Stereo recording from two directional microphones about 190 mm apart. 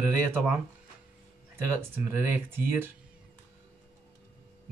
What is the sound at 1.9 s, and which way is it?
Speech, 10° right (ahead or behind).